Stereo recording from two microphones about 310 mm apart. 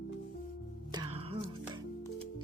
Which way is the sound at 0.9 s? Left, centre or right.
Centre.